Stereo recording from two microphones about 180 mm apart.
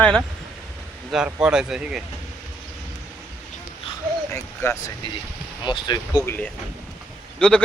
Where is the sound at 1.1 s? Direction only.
5° right (ahead or behind).